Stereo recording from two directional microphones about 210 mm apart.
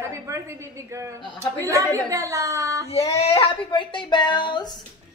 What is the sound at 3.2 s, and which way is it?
Speech, 25° left (ahead or behind).